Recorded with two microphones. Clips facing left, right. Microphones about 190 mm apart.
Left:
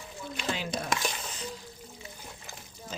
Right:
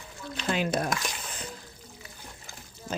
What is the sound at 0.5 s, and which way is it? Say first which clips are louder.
Speech: right 7 dB; 60° right (ahead or behind).